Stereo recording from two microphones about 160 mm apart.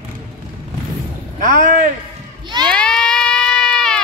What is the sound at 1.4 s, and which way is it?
Speech, 55° right (ahead or behind).